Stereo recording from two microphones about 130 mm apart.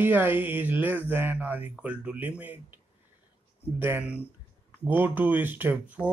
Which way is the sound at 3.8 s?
15° right (ahead or behind).